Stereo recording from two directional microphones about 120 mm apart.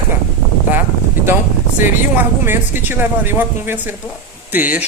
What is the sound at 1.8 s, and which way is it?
Speech, 20° right (ahead or behind).